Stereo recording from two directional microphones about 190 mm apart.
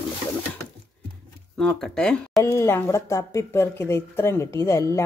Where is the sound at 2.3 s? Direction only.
15° left (ahead or behind).